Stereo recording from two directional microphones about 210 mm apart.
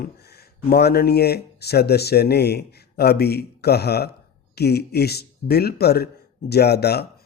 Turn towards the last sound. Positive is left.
turn(degrees=50)  # may be behind; listen again after turning